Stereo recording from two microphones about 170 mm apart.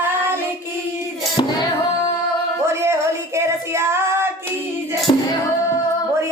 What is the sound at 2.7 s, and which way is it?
Female singing, 15° right (ahead or behind).